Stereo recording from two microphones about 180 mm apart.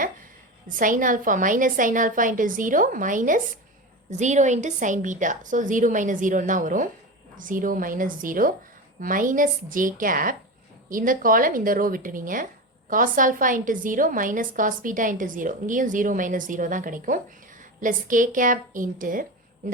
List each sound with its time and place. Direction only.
0.7 s a woman's voice: 45° right (ahead or behind)